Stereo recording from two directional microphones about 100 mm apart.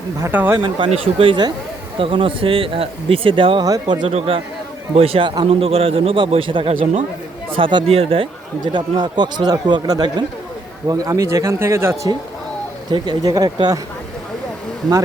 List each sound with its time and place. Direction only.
0.3 s speech: 20° right (ahead or behind)
0.9 s speech: 70° right (ahead or behind)
3.6 s speech: 45° right (ahead or behind)
4.9 s a man's voice: 75° right (ahead or behind); by 7.9 s 55° right (ahead or behind)
7.9 s a man's voice: 75° right (ahead or behind)
8.6 s speech: 45° right (ahead or behind); by 11.9 s 25° right (ahead or behind)
12.9 s speech: 40° right (ahead or behind)